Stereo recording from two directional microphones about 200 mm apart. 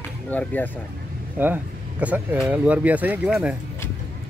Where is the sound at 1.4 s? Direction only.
10° right (ahead or behind).